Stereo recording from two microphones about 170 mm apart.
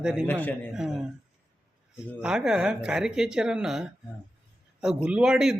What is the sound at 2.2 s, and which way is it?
Speech, 5° right (ahead or behind).